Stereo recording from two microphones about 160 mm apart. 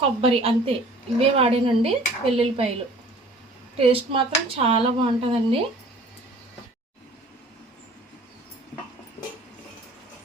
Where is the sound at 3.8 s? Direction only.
35° right (ahead or behind).